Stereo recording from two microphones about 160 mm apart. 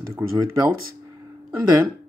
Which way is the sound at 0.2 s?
15° right (ahead or behind).